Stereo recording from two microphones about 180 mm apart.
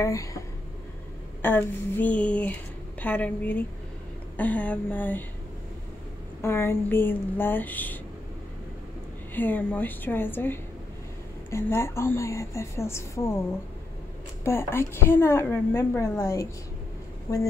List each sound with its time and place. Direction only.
0.0 s a woman's voice: 20° left (ahead or behind)
1.4 s a woman's voice: 10° left (ahead or behind)
6.4 s a woman's voice: 15° left (ahead or behind)
9.3 s a woman's voice: 10° left (ahead or behind)
14.4 s a woman's voice: 15° left (ahead or behind)